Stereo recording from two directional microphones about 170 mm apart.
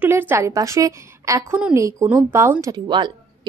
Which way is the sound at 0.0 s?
10° right (ahead or behind).